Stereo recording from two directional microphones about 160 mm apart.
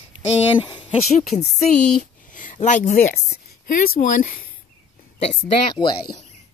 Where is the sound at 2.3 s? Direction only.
55° left (ahead or behind).